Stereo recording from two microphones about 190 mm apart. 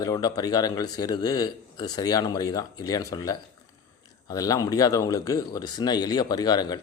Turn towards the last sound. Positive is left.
turn(degrees=20)  # may be behind; listen again after turning